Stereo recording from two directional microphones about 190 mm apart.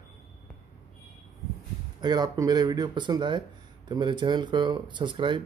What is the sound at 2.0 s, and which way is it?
Speech, 20° right (ahead or behind).